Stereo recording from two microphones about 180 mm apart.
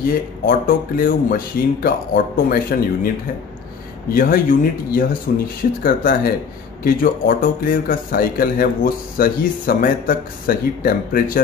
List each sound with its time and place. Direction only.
0.5 s speech: 55° left (ahead or behind)
4.1 s a man's voice: 50° left (ahead or behind)